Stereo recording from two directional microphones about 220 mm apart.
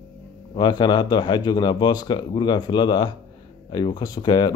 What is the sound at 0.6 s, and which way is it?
Speech, 20° left (ahead or behind).